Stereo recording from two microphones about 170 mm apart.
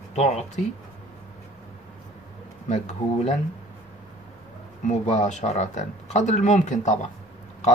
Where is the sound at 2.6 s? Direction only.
40° left (ahead or behind).